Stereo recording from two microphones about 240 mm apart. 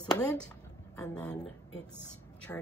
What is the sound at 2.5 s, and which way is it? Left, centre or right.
Speech, centre.